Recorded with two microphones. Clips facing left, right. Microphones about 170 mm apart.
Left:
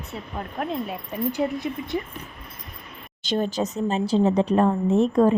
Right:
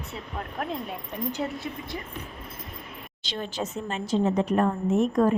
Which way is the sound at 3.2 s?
45° left (ahead or behind).